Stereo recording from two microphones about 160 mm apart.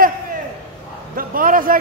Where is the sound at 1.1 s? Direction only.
60° right (ahead or behind).